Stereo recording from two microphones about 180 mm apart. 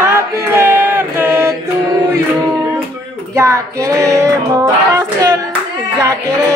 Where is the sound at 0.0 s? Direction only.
15° right (ahead or behind).